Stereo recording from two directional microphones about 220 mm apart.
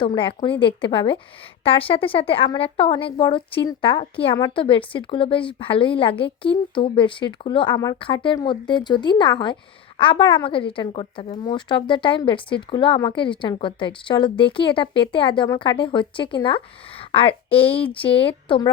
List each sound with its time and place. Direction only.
0.0 s speech: 25° left (ahead or behind)